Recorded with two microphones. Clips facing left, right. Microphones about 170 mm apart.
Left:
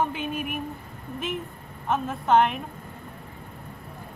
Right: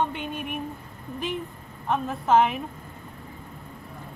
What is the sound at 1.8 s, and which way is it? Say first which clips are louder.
Speech: even; centre (ahead or behind).